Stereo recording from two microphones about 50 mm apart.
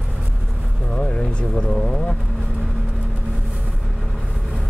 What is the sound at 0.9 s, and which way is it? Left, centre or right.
Speech, left.